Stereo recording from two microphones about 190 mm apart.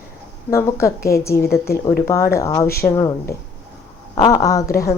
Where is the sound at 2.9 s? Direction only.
15° left (ahead or behind).